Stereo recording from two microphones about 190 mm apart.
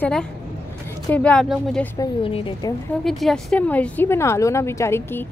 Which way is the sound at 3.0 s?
Centre (ahead or behind).